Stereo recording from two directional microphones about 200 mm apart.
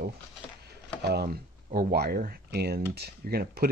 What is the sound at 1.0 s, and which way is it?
Speech, 50° right (ahead or behind).